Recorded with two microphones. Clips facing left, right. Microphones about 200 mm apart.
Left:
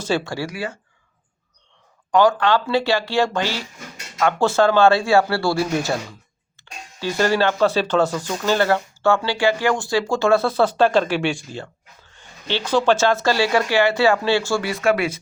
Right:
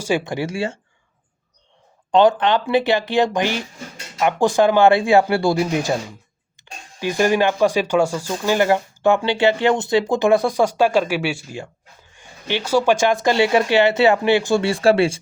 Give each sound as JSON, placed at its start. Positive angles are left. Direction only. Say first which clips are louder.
{"t": 0.0, "sound": "speech", "louder": "right 2 dB", "side_deg": -15}
{"t": 2.1, "sound": "speech", "louder": "right 1 dB", "side_deg": -20}